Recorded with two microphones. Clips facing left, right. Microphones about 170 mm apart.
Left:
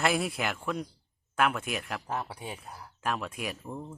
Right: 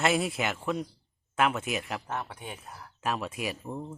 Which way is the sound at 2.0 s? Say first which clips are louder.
Left 1 dB; 10° left (ahead or behind).